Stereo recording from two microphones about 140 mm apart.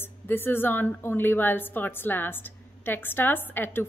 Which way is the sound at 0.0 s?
15° left (ahead or behind).